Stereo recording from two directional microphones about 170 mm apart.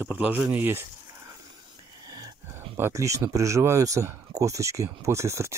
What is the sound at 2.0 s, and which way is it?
Speech, 20° right (ahead or behind).